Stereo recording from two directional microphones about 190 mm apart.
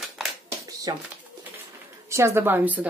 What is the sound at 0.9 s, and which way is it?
Speech, 20° right (ahead or behind).